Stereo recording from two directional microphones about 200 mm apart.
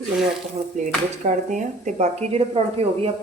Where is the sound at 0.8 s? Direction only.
40° right (ahead or behind).